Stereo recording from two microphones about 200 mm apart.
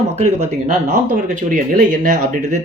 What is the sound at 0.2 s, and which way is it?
Speech, 35° right (ahead or behind).